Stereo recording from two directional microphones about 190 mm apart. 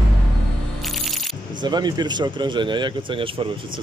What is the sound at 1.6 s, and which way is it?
Speech, 20° right (ahead or behind).